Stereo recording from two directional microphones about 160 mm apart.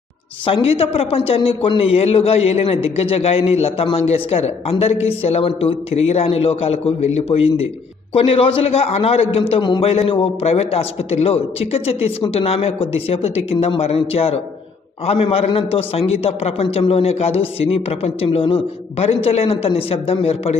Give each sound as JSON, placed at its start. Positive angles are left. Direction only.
{"t": 0.5, "sound": "a man's voice", "side_deg": 35}